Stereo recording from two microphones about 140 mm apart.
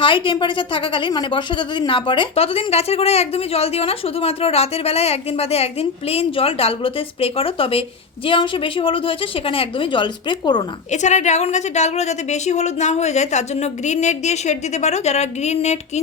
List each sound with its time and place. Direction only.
0.0 s a woman's voice: 35° left (ahead or behind)
10.9 s a woman's voice: 55° left (ahead or behind)